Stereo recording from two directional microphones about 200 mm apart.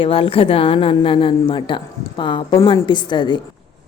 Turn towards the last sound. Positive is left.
turn(degrees=20)  # may be behind; listen again after turning